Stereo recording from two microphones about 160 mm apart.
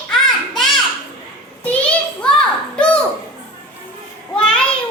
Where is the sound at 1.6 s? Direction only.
10° left (ahead or behind).